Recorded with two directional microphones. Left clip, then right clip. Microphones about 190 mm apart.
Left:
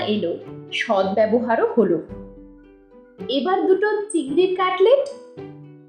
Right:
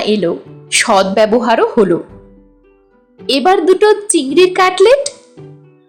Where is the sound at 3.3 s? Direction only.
45° right (ahead or behind).